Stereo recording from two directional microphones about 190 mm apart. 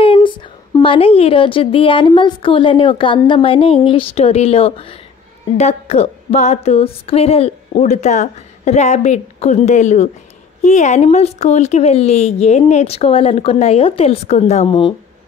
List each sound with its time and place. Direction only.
0.0 s a woman's voice: 25° left (ahead or behind)